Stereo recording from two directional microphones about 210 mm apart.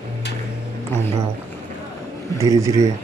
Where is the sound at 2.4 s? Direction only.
15° right (ahead or behind).